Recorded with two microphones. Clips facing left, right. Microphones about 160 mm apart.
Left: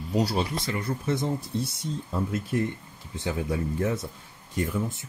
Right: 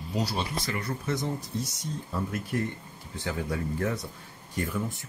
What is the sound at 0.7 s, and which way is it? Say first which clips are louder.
Speech: left 4 dB; 25° left (ahead or behind).